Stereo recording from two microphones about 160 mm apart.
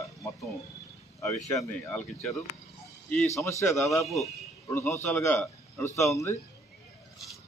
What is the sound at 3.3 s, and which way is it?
A man's voice, 20° left (ahead or behind).